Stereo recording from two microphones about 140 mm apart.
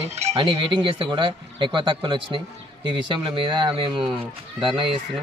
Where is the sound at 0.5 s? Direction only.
35° right (ahead or behind).